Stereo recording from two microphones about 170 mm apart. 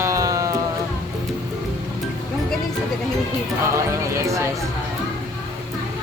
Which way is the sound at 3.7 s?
15° right (ahead or behind).